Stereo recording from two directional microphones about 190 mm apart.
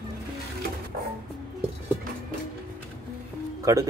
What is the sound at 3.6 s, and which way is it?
Music, 15° right (ahead or behind).